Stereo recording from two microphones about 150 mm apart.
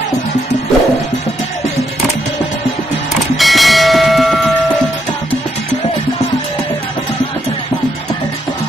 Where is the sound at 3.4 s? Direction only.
Centre (ahead or behind).